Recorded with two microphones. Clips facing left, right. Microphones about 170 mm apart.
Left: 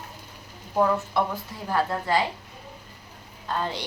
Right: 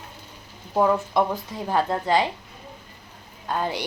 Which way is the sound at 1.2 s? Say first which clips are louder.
Right 4 dB; 15° right (ahead or behind).